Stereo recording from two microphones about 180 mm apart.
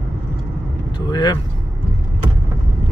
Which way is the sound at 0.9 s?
25° left (ahead or behind).